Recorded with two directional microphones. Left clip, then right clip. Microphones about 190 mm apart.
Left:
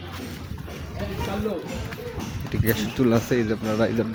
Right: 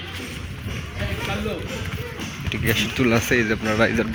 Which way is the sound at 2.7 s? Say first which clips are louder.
Right 2 dB; 15° left (ahead or behind).